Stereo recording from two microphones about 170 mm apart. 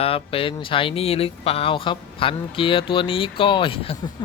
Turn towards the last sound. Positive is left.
turn(degrees=35)  # may be behind; listen again after turning